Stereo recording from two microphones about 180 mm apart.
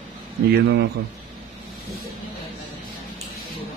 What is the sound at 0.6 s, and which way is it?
Speech, 75° right (ahead or behind).